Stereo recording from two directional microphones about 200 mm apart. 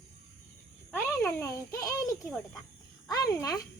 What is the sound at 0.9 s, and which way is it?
Speech, 15° left (ahead or behind).